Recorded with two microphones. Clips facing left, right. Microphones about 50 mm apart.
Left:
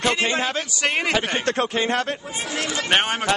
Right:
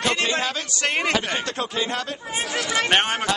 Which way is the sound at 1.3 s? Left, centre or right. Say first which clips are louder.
Left 4 dB; left.